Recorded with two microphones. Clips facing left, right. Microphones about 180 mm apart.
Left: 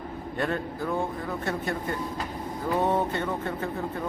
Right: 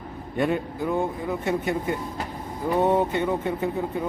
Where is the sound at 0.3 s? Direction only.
15° right (ahead or behind).